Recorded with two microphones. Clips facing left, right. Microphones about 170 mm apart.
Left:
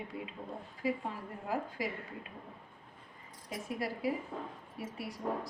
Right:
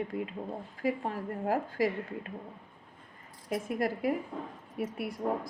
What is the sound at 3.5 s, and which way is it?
A woman's voice, 50° right (ahead or behind).